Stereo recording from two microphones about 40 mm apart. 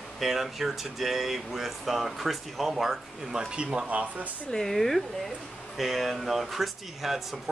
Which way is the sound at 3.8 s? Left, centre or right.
Right.